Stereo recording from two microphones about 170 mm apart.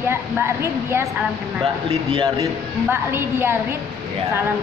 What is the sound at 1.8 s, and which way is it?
Speech, 30° right (ahead or behind).